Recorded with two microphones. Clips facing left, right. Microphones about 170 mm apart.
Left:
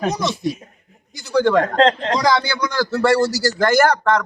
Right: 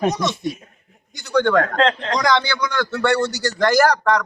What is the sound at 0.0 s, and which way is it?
A man's voice, centre (ahead or behind).